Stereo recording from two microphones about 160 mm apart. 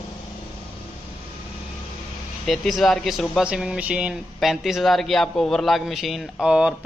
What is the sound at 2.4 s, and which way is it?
Speech, centre (ahead or behind).